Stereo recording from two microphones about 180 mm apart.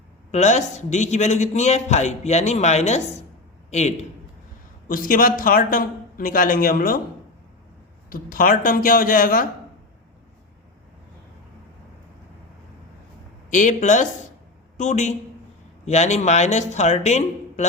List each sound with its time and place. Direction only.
0.3 s a man's voice: 40° left (ahead or behind)
4.9 s a man's voice: 50° left (ahead or behind)
8.1 s a man's voice: 50° left (ahead or behind)
13.5 s a man's voice: 45° left (ahead or behind)